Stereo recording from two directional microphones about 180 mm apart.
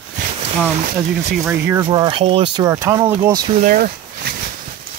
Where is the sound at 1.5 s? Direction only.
15° right (ahead or behind).